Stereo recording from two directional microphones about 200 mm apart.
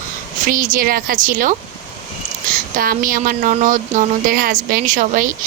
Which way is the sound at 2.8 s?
45° right (ahead or behind).